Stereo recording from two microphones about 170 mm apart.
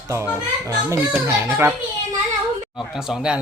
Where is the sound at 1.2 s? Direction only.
15° right (ahead or behind).